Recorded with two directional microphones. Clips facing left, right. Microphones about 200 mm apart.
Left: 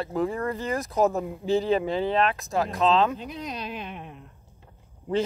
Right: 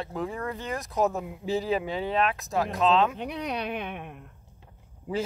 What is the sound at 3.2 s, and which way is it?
A woman's voice, 65° right (ahead or behind).